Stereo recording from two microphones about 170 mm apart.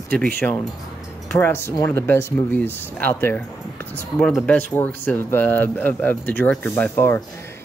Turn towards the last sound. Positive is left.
turn(degrees=15)  # may be behind; listen again after turning